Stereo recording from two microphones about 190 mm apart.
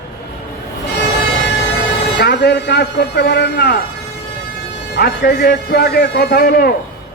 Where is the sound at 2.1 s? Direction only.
60° left (ahead or behind).